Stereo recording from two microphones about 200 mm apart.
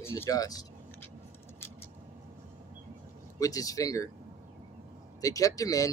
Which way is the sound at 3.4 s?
15° left (ahead or behind).